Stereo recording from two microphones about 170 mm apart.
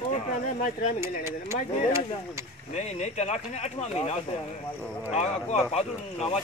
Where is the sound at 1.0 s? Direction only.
15° right (ahead or behind).